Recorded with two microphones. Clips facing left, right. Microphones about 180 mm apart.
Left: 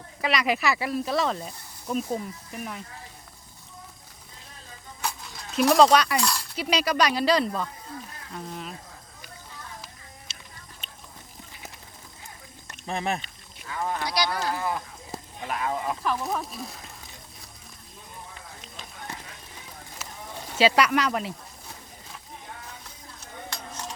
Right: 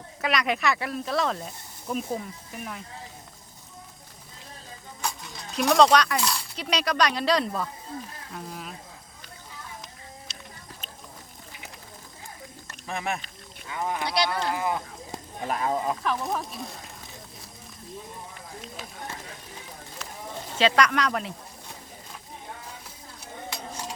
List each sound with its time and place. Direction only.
0.2 s speech: centre (ahead or behind)
5.0 s speech: centre (ahead or behind)
7.9 s speech: 25° right (ahead or behind)
8.3 s a sound: centre (ahead or behind)
10.3 s music: 5° left (ahead or behind)
12.9 s speech: 35° left (ahead or behind)
13.7 s speech: 15° right (ahead or behind)
14.0 s speech: 25° right (ahead or behind)
15.4 s speech: 35° right (ahead or behind)
16.0 s speech: centre (ahead or behind)
20.0 s a sound: 5° left (ahead or behind)
20.6 s speech: 5° left (ahead or behind)
23.2 s a sound: 10° right (ahead or behind)